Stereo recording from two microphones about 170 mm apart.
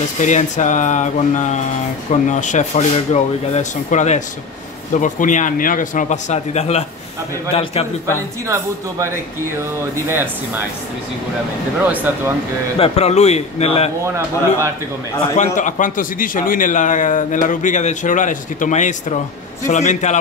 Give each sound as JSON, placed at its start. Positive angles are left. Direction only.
{"t": 0.2, "sound": "a man's voice", "side_deg": 45}
{"t": 8.5, "sound": "a man's voice", "side_deg": -20}
{"t": 12.7, "sound": "a man's voice", "side_deg": 35}
{"t": 14.0, "sound": "a man's voice", "side_deg": -15}
{"t": 15.3, "sound": "a man's voice", "side_deg": 45}